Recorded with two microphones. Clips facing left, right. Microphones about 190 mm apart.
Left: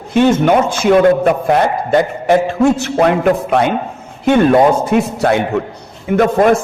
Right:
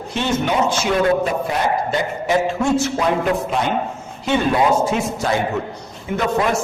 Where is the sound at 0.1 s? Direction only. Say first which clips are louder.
Left 10 dB; 50° left (ahead or behind).